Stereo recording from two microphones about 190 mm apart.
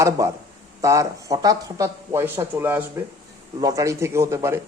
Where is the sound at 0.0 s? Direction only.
15° right (ahead or behind).